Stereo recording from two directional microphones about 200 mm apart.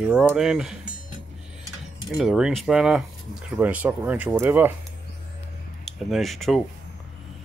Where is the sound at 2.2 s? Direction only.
Centre (ahead or behind).